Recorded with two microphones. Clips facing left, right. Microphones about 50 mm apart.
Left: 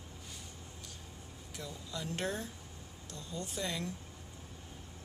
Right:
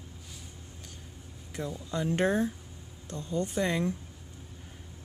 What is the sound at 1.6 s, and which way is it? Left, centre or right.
Speech, right.